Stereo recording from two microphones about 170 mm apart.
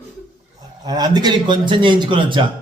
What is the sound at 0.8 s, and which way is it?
A man's voice, 25° right (ahead or behind).